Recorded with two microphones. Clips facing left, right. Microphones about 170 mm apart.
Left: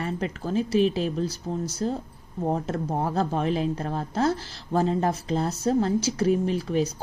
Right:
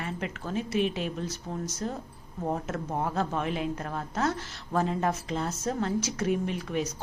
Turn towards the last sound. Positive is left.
turn(degrees=30)  # may be behind; listen again after turning